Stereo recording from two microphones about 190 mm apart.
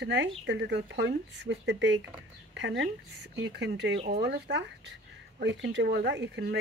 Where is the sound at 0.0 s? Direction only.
70° right (ahead or behind).